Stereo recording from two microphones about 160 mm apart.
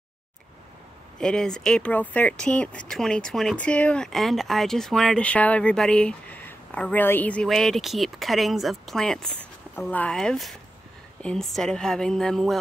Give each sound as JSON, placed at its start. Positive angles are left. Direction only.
{"t": 1.2, "sound": "speech", "side_deg": 5}